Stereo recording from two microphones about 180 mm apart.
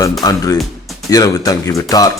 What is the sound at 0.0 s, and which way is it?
Speech, 20° left (ahead or behind).